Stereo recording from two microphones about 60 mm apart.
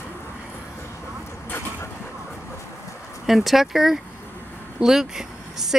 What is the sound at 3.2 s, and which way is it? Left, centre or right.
Speech, centre.